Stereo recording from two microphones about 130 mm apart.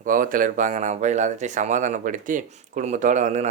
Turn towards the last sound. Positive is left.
turn(degrees=-65)  # may be behind; listen again after turning